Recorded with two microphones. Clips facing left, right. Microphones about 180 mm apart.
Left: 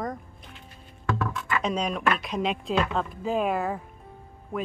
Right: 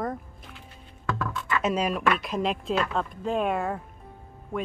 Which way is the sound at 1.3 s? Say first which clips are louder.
Right 1 dB; 5° right (ahead or behind).